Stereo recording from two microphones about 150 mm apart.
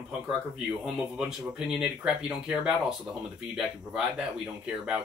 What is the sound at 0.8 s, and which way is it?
Speech, 5° right (ahead or behind).